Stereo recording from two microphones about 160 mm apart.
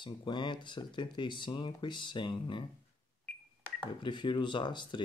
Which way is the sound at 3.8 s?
30° left (ahead or behind).